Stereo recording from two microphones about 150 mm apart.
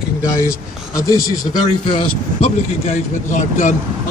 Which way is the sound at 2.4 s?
50° left (ahead or behind).